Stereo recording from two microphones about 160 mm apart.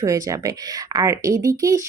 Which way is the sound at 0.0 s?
20° right (ahead or behind).